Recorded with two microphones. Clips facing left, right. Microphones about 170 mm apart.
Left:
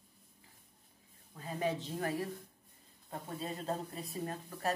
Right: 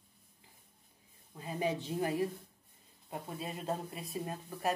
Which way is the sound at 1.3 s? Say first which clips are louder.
Right 1 dB; 5° right (ahead or behind).